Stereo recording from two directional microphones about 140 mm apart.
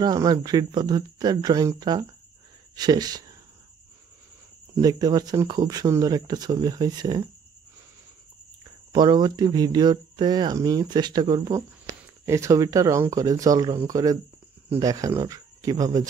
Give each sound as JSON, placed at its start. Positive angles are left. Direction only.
{"t": 0.0, "sound": "speech", "side_deg": -25}
{"t": 4.7, "sound": "speech", "side_deg": -30}
{"t": 8.9, "sound": "speech", "side_deg": -30}